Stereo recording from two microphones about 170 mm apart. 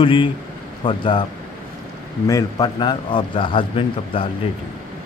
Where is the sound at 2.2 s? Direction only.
20° left (ahead or behind).